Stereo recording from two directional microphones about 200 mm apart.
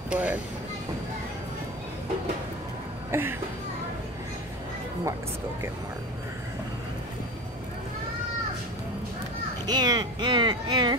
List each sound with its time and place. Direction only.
0.1 s speech: 5° right (ahead or behind)
3.1 s speech: 10° right (ahead or behind)
9.7 s a sound: 20° right (ahead or behind)